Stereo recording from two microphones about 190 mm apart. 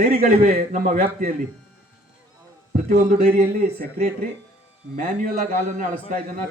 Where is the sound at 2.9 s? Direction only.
50° right (ahead or behind).